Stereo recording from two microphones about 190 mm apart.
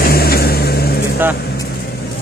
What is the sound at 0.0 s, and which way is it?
Vehicle, 55° left (ahead or behind).